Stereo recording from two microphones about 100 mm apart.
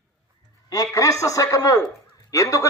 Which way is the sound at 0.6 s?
35° left (ahead or behind).